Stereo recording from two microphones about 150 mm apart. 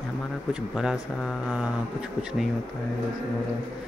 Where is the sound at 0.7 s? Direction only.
5° right (ahead or behind).